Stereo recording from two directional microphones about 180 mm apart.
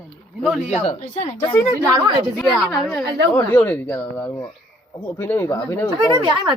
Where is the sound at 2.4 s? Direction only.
Centre (ahead or behind).